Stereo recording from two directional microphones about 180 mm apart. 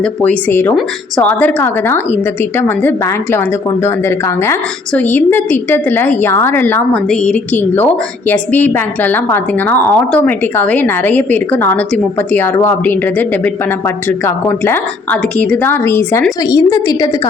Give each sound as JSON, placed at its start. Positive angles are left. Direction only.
{"t": 0.0, "sound": "speech", "side_deg": 10}
{"t": 4.9, "sound": "a woman's voice", "side_deg": 10}